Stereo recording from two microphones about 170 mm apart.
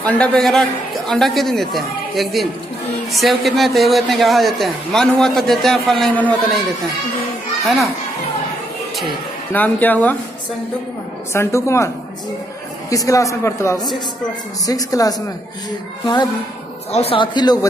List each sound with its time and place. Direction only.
0.0 s a man's voice: 5° left (ahead or behind)
7.6 s a man's voice: centre (ahead or behind)
9.5 s speech: 10° left (ahead or behind)
11.3 s speech: 15° left (ahead or behind)
12.9 s a man's voice: 20° left (ahead or behind)
16.9 s a man's voice: 35° left (ahead or behind)